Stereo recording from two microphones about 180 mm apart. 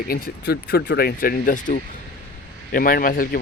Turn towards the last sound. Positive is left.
turn(degrees=50)  # may be behind; listen again after turning